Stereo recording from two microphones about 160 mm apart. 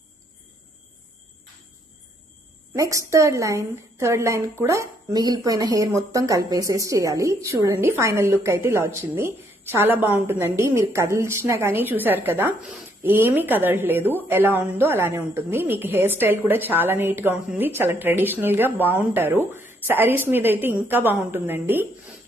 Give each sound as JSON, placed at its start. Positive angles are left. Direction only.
{"t": 2.7, "sound": "a woman's voice", "side_deg": -20}